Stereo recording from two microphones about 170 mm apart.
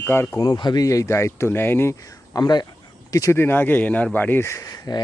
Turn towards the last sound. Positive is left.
turn(degrees=20)  # may be behind; listen again after turning